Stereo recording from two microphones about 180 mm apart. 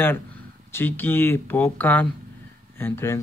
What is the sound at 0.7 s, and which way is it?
A man's voice, 10° left (ahead or behind).